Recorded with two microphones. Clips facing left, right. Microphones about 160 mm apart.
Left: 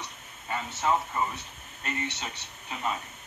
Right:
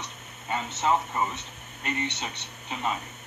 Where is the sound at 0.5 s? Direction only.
20° right (ahead or behind).